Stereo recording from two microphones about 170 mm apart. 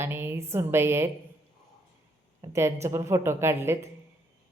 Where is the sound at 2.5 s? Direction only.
15° right (ahead or behind).